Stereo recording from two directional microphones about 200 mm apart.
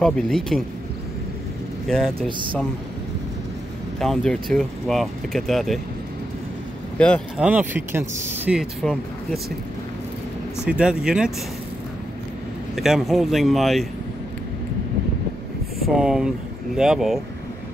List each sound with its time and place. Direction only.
0.0 s speech: 5° left (ahead or behind)
1.9 s speech: centre (ahead or behind)
2.2 s speech: 25° right (ahead or behind)
4.0 s speech: centre (ahead or behind)
7.0 s speech: 5° left (ahead or behind)
7.4 s speech: 10° right (ahead or behind)
10.6 s speech: 5° right (ahead or behind)
12.7 s speech: centre (ahead or behind)
15.8 s speech: 5° right (ahead or behind)